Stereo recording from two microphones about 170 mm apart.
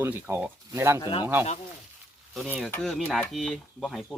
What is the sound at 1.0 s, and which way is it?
Speech, 30° left (ahead or behind).